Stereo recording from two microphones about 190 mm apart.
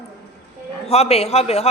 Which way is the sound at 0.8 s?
35° left (ahead or behind).